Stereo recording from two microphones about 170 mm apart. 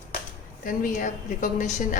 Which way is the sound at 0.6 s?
50° left (ahead or behind).